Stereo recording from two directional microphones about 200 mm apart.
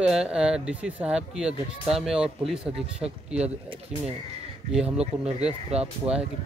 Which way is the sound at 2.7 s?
30° right (ahead or behind).